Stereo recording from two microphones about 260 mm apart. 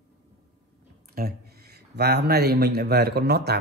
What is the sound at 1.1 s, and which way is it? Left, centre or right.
Speech, right.